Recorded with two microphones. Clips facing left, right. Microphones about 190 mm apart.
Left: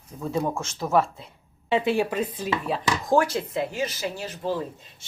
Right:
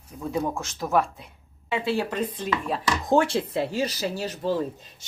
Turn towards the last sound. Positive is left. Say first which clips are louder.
# right 2 dB
turn(degrees=-35)  # may be behind; listen again after turning